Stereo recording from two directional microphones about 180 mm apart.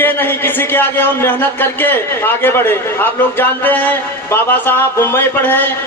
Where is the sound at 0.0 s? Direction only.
10° left (ahead or behind).